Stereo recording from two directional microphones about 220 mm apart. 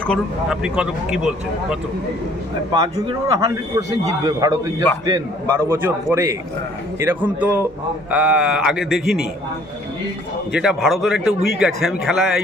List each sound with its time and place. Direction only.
0.0 s a man's voice: centre (ahead or behind)
2.7 s a man's voice: 20° right (ahead or behind)
8.1 s a man's voice: 5° right (ahead or behind)
10.5 s a man's voice: 5° right (ahead or behind)